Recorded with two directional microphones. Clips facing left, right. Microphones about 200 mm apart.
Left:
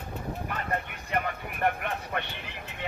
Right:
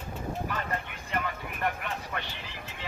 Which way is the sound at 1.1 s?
50° left (ahead or behind).